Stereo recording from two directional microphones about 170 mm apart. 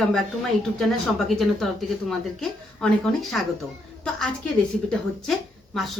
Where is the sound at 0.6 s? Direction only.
Centre (ahead or behind).